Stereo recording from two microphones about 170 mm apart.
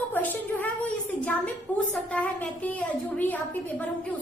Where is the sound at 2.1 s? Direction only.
10° left (ahead or behind).